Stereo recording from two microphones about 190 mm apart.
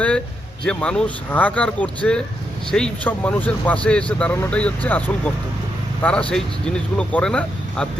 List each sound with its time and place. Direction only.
0.6 s speech: 5° left (ahead or behind)